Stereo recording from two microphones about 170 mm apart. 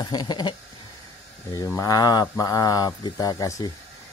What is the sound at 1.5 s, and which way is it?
Speech, 20° left (ahead or behind).